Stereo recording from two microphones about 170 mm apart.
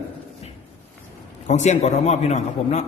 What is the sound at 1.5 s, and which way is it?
A man's voice, 45° left (ahead or behind).